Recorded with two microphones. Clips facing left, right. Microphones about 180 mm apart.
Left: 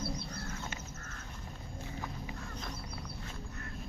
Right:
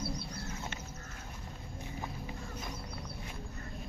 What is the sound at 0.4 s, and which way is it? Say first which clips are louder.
Horse: even; 20° right (ahead or behind).